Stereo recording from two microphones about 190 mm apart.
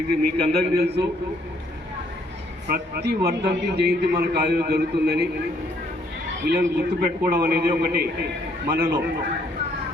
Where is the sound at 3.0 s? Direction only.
60° right (ahead or behind).